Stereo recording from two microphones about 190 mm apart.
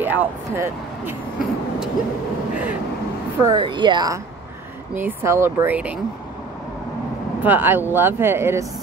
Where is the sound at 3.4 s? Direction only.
25° right (ahead or behind); by 6.0 s 5° right (ahead or behind).